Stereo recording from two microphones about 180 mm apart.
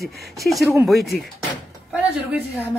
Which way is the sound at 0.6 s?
15° right (ahead or behind).